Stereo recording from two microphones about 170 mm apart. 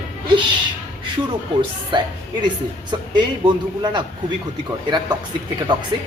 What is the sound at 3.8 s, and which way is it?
Speech, 25° right (ahead or behind).